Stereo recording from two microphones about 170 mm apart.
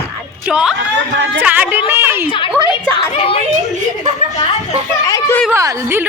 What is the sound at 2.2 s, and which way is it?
A woman's voice, 30° left (ahead or behind).